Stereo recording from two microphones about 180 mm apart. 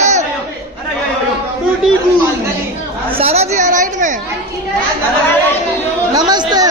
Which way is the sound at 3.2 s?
35° right (ahead or behind).